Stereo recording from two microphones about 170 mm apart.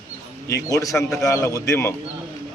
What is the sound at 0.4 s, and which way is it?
Speech, 20° left (ahead or behind).